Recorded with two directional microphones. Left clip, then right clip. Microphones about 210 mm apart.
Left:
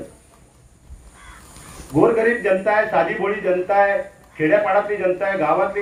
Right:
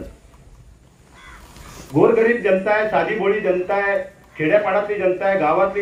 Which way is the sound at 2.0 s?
5° right (ahead or behind).